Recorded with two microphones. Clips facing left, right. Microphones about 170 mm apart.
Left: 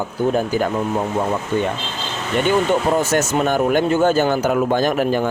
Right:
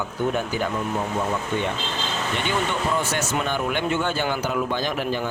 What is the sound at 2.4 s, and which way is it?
Speech, 45° left (ahead or behind).